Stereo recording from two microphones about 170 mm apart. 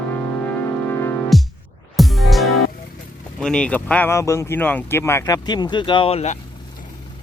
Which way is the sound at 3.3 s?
5° left (ahead or behind).